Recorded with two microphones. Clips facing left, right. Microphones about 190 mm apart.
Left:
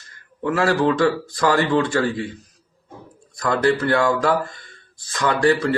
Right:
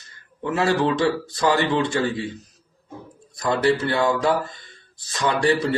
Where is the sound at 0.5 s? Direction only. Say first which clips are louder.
Left 1 dB; 25° right (ahead or behind).